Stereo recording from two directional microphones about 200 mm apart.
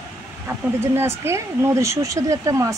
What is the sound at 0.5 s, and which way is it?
Speech, 10° right (ahead or behind).